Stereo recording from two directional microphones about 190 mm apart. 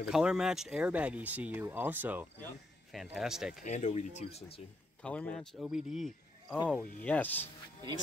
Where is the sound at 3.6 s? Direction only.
40° left (ahead or behind).